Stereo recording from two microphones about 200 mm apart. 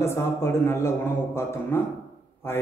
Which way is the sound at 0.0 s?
10° left (ahead or behind).